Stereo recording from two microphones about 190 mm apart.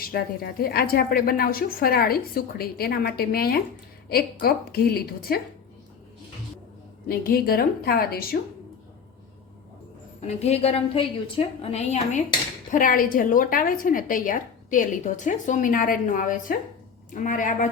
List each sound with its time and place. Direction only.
0.0 s a woman's voice: 55° left (ahead or behind)
7.1 s a woman's voice: 50° left (ahead or behind)
10.2 s a woman's voice: 35° left (ahead or behind)
12.7 s a woman's voice: 45° left (ahead or behind)